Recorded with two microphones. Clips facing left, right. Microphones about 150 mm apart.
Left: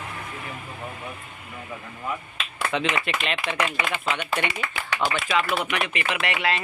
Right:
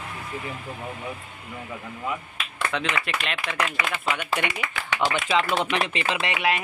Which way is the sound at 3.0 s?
Centre (ahead or behind).